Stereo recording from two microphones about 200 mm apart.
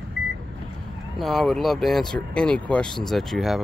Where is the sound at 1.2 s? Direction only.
Centre (ahead or behind).